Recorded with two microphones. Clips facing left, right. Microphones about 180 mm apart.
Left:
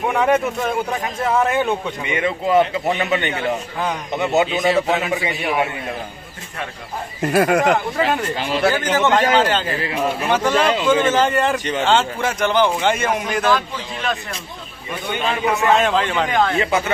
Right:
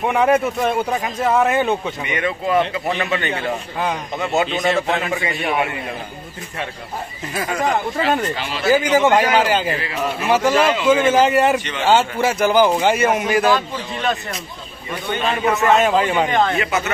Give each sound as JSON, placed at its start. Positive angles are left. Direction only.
{"t": 0.0, "sound": "speech", "side_deg": 0}
{"t": 2.0, "sound": "speech", "side_deg": 25}
{"t": 4.5, "sound": "speech", "side_deg": 0}
{"t": 7.2, "sound": "speech", "side_deg": 60}
{"t": 8.7, "sound": "a man's voice", "side_deg": -10}
{"t": 15.0, "sound": "a man's voice", "side_deg": 15}
{"t": 15.6, "sound": "speech", "side_deg": -5}